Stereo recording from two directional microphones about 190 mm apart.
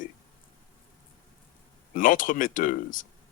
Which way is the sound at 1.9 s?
45° left (ahead or behind).